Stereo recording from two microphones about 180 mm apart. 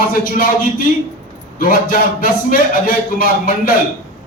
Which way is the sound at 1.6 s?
50° left (ahead or behind).